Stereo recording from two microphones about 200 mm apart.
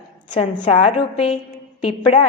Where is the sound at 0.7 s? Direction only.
35° left (ahead or behind).